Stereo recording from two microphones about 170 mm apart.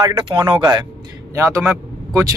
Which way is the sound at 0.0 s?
25° right (ahead or behind).